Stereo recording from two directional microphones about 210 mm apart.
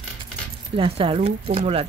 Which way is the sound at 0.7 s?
25° right (ahead or behind).